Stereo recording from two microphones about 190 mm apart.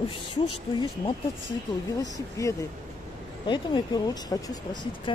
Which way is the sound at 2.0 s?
15° left (ahead or behind).